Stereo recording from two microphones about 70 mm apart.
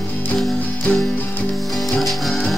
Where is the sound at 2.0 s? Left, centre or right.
Centre.